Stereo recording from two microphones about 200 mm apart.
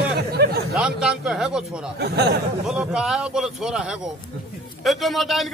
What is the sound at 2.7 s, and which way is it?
Speech, 5° right (ahead or behind).